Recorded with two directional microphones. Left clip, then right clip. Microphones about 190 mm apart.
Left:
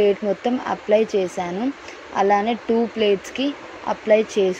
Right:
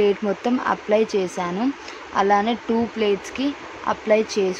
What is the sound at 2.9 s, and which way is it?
Speech, 40° right (ahead or behind).